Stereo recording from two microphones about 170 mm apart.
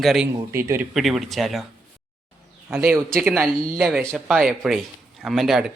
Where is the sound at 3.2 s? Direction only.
10° right (ahead or behind).